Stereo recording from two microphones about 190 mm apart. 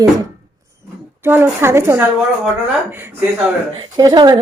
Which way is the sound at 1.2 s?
10° right (ahead or behind).